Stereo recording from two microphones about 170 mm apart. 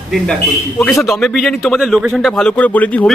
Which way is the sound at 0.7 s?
15° left (ahead or behind).